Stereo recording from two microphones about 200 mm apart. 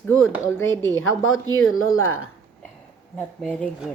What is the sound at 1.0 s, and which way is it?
Speech, 85° left.